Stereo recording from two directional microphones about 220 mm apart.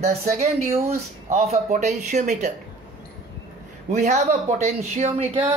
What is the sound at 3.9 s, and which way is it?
Speech, 35° right (ahead or behind).